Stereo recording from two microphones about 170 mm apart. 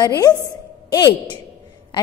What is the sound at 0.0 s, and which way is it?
A woman's voice, 20° left (ahead or behind).